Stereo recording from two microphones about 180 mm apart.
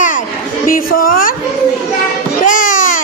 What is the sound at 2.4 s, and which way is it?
Music, 45° left (ahead or behind).